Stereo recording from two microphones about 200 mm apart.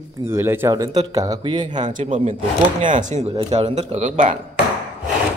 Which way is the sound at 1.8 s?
40° right (ahead or behind).